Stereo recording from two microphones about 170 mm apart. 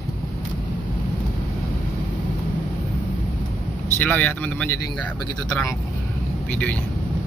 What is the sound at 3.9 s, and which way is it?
Speech, 10° left (ahead or behind).